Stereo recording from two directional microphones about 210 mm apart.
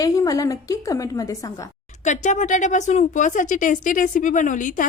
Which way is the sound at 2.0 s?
35° left (ahead or behind).